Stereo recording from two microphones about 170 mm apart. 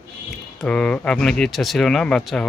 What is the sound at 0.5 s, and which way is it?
Speech, 5° left (ahead or behind).